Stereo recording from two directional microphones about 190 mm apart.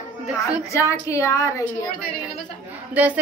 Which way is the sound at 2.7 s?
10° right (ahead or behind).